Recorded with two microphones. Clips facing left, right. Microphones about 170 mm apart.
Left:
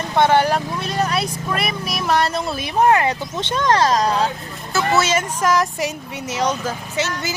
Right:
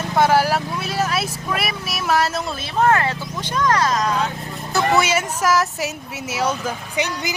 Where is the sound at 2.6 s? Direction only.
15° left (ahead or behind); by 4.3 s 30° left (ahead or behind).